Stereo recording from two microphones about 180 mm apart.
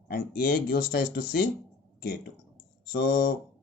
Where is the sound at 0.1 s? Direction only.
55° left (ahead or behind).